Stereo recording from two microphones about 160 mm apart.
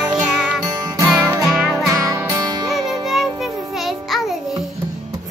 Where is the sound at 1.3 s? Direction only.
20° right (ahead or behind).